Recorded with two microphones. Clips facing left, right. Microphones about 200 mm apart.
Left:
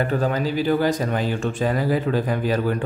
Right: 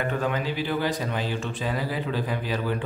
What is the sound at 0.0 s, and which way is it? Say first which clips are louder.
Speech: left 5 dB; 35° left (ahead or behind).